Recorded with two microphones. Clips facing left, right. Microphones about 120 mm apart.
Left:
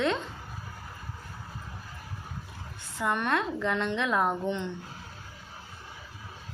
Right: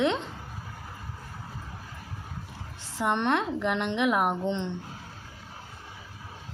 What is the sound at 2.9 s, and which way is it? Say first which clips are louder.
A woman's voice: right 2 dB; 25° right (ahead or behind).